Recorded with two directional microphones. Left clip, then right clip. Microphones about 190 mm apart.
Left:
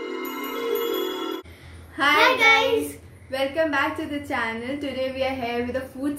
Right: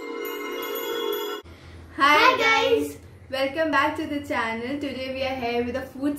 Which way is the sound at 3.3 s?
15° right (ahead or behind).